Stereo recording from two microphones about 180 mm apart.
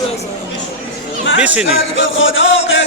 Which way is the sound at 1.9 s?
90° left.